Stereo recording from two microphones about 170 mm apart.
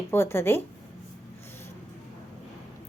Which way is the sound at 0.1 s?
15° left (ahead or behind).